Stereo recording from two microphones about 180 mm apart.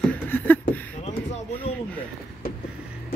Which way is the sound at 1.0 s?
40° left (ahead or behind).